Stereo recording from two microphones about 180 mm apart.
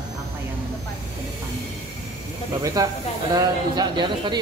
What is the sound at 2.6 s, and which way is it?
A man's voice, 20° right (ahead or behind).